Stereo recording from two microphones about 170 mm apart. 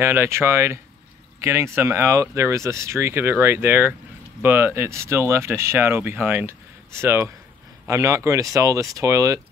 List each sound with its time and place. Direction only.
0.0 s speech: 15° right (ahead or behind)